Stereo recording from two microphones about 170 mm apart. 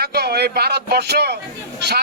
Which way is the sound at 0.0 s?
70° right (ahead or behind).